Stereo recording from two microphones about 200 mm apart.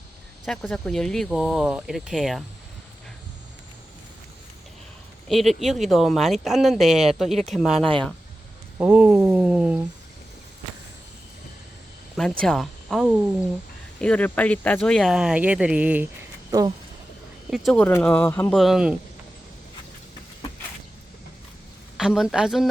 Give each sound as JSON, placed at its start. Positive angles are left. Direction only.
{"t": 0.4, "sound": "speech", "side_deg": 0}
{"t": 5.3, "sound": "speech", "side_deg": 0}
{"t": 8.8, "sound": "a sound", "side_deg": -5}
{"t": 12.4, "sound": "speech", "side_deg": 0}
{"t": 16.5, "sound": "speech", "side_deg": -20}
{"t": 17.5, "sound": "speech", "side_deg": 0}
{"t": 18.5, "sound": "speech", "side_deg": 0}
{"t": 21.9, "sound": "speech", "side_deg": 0}